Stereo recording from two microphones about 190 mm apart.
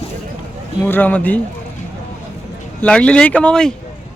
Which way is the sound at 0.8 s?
10° left (ahead or behind).